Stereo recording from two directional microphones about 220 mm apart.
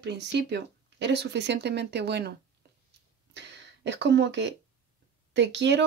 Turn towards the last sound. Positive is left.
turn(degrees=-55)  # may be behind; listen again after turning